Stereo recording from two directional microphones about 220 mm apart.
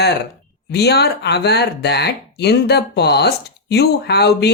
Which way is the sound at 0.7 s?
50° left (ahead or behind).